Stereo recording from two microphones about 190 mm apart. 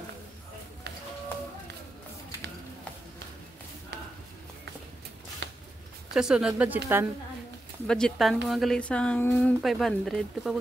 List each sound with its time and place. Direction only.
5.4 s a sound: 65° right (ahead or behind)
6.1 s speech: 5° right (ahead or behind)
7.8 s speech: 5° left (ahead or behind)